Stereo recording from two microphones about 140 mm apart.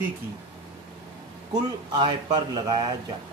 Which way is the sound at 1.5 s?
30° right (ahead or behind).